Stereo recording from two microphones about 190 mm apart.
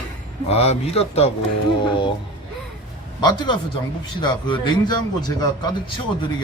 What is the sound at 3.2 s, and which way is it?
A man's voice, 25° left (ahead or behind).